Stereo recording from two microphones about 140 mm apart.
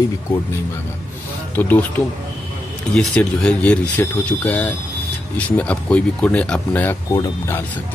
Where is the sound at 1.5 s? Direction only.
15° left (ahead or behind).